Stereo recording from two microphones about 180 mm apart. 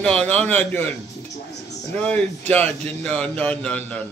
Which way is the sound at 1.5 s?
20° left (ahead or behind).